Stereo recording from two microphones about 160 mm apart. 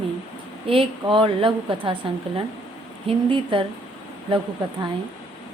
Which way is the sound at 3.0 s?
35° right (ahead or behind).